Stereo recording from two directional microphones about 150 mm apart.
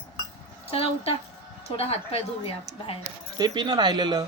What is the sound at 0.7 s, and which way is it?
A woman's voice, 40° left (ahead or behind).